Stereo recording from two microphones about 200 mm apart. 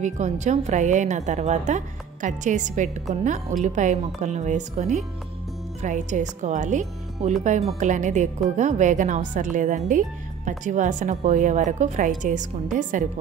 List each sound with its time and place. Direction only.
0.0 s speech: 35° right (ahead or behind)